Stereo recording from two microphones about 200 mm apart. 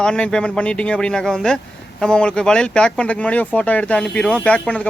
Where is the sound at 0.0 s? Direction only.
5° left (ahead or behind).